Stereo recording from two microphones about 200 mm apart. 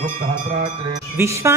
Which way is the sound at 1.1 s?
15° right (ahead or behind).